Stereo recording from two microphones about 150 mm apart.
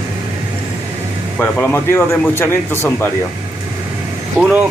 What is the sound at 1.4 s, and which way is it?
A man's voice, 15° left (ahead or behind).